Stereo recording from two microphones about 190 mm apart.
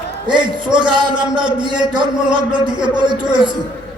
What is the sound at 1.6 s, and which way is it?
Speech, 25° right (ahead or behind).